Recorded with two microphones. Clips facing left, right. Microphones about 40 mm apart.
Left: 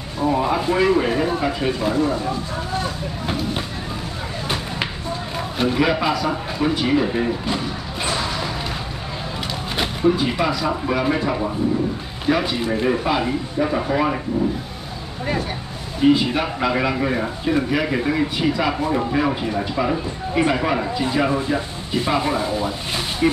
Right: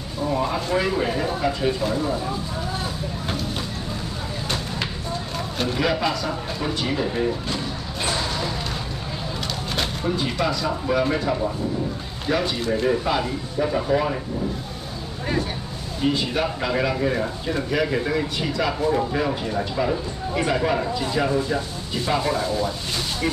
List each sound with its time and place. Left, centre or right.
0.3 s speech: centre
5.6 s a man's voice: centre
9.8 s speech: centre
16.0 s speech: centre